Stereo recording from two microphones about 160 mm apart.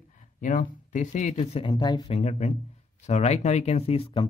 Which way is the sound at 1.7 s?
25° left (ahead or behind).